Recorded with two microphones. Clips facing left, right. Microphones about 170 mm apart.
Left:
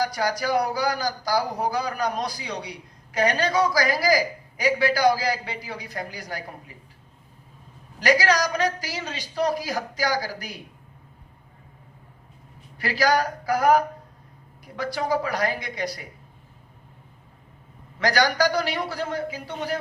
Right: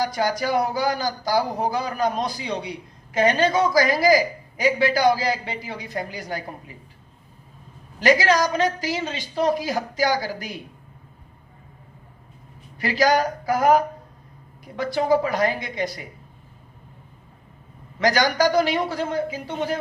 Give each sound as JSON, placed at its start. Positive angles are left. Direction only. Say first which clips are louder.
{"t": 0.0, "sound": "speech", "louder": "right 2 dB", "side_deg": -25}
{"t": 7.9, "sound": "speech", "louder": "right 3 dB", "side_deg": -25}
{"t": 12.8, "sound": "speech", "louder": "right 3 dB", "side_deg": -20}
{"t": 14.9, "sound": "speech", "louder": "right 6 dB", "side_deg": -25}
{"t": 18.0, "sound": "speech", "louder": "right 2 dB", "side_deg": -20}